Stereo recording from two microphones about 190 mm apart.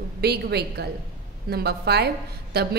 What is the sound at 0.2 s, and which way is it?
A woman's voice, 60° right (ahead or behind).